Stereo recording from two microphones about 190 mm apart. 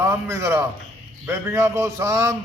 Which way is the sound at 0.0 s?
15° right (ahead or behind).